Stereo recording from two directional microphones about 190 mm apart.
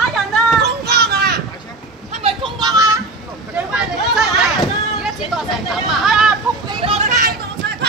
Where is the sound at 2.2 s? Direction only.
25° right (ahead or behind).